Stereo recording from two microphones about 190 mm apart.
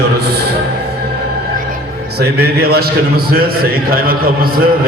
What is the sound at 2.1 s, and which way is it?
A man's voice, 55° right (ahead or behind).